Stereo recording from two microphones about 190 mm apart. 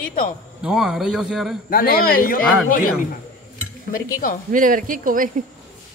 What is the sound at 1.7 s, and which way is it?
Speech, 50° left (ahead or behind).